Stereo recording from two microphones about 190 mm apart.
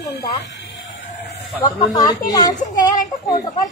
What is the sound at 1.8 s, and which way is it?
Speech, 20° left (ahead or behind).